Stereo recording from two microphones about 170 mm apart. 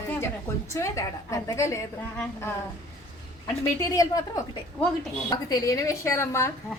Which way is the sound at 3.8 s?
20° left (ahead or behind).